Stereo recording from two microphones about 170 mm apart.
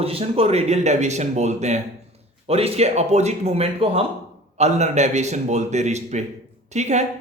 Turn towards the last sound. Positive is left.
turn(degrees=-40)  # may be behind; listen again after turning